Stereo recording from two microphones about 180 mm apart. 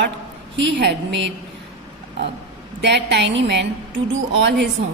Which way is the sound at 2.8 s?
70° right (ahead or behind).